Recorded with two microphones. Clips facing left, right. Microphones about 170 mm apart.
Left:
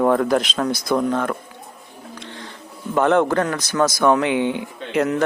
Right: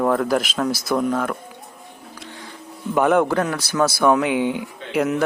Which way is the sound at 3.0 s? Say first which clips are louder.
Even; 10° right (ahead or behind).